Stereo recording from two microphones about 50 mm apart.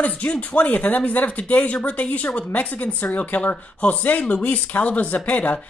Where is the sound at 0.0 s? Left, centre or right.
Left.